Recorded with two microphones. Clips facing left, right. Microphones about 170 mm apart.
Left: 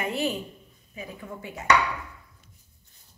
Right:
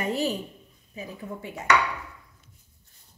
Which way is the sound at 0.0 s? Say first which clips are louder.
Right 1 dB; 40° right (ahead or behind).